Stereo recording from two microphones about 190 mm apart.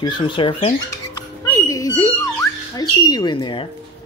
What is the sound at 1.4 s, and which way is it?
Speech, 15° left (ahead or behind).